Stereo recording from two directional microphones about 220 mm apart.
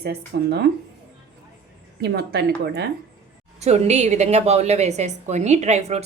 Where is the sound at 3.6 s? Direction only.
30° right (ahead or behind).